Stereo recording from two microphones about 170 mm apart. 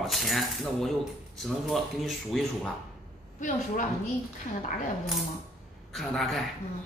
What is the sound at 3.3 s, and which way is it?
Speech, 50° left (ahead or behind).